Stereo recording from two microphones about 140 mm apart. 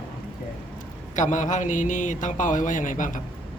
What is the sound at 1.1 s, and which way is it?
Speech, 60° left (ahead or behind).